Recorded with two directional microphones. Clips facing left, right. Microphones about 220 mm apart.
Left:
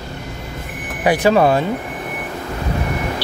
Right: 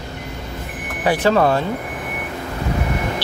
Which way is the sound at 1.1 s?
15° left (ahead or behind).